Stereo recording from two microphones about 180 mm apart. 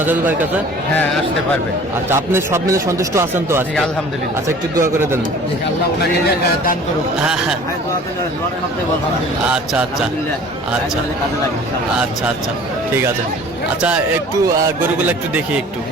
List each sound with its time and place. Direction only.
0.0 s speech: 10° right (ahead or behind)
2.0 s speech: 15° right (ahead or behind)
4.7 s speech: 15° right (ahead or behind)
6.0 s a man's voice: 60° left (ahead or behind)